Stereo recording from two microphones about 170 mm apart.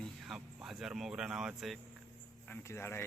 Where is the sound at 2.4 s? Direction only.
15° left (ahead or behind).